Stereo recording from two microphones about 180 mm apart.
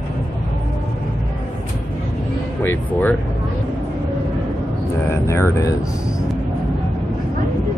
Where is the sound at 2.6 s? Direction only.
10° left (ahead or behind).